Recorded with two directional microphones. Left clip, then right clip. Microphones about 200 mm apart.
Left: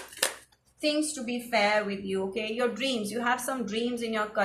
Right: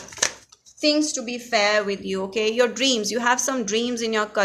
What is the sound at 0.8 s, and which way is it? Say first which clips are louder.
Speech: right 7 dB; 45° right (ahead or behind).